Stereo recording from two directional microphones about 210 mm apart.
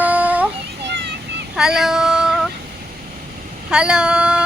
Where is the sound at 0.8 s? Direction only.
55° right (ahead or behind).